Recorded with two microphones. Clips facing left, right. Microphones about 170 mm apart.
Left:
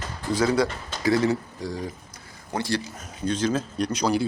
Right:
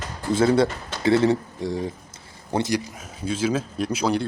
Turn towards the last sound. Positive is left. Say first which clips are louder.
# even
turn(degrees=0)  # may be behind; listen again after turning